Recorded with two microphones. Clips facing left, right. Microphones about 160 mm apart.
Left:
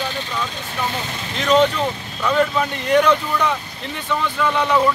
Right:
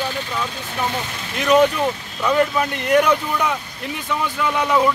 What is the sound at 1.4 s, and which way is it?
Speech, 10° right (ahead or behind).